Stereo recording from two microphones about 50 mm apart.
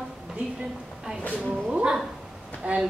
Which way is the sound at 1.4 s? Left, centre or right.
Centre.